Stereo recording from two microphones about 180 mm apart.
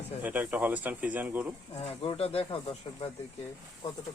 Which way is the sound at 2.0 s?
30° left (ahead or behind).